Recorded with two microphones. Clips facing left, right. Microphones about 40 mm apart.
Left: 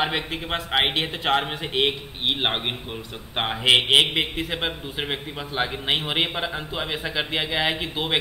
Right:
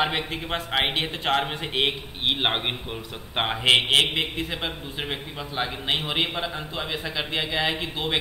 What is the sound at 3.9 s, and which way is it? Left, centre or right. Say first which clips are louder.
A man's voice: left 2 dB; centre.